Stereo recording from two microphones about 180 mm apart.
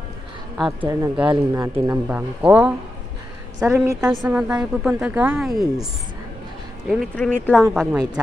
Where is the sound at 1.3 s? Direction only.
20° right (ahead or behind).